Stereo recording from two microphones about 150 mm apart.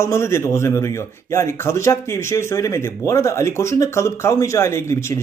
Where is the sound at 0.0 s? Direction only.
20° left (ahead or behind).